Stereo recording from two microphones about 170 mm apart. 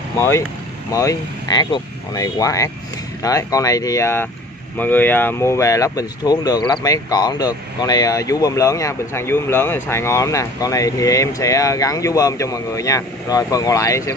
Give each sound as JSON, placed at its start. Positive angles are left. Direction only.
{"t": 0.9, "sound": "speech", "side_deg": 20}